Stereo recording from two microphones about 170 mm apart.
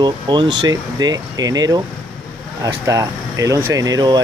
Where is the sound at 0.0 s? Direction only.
25° right (ahead or behind).